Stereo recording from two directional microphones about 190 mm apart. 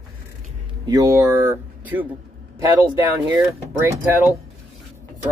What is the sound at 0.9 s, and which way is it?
Speech, 20° right (ahead or behind).